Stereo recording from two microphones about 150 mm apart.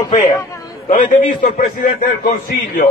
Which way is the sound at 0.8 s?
60° left (ahead or behind).